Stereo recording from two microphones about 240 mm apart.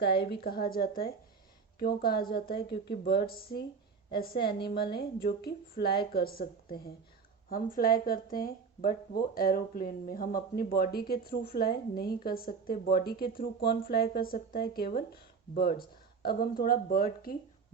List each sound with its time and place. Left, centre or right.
0.3 s speech: left